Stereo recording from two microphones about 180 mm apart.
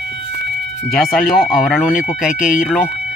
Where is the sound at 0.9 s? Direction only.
Centre (ahead or behind).